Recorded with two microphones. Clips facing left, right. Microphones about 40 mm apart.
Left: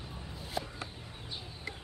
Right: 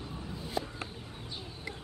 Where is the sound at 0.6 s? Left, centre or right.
Centre.